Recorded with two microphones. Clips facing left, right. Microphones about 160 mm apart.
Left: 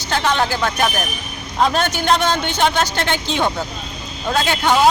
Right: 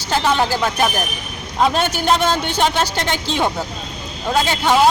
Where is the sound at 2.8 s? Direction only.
35° right (ahead or behind).